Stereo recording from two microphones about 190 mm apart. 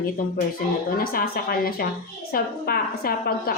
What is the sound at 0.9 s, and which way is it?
A woman's voice, 50° left (ahead or behind).